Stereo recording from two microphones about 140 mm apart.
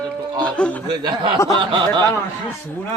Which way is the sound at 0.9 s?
35° right (ahead or behind).